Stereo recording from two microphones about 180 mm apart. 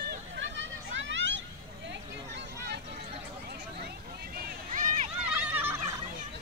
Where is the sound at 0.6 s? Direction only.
90° right.